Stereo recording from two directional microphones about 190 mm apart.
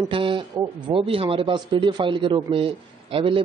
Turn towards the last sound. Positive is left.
turn(degrees=-30)  # may be behind; listen again after turning